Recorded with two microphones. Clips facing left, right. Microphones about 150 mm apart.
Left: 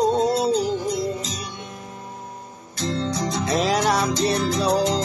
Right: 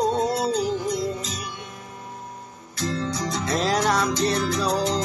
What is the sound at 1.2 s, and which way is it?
Music, 30° left (ahead or behind).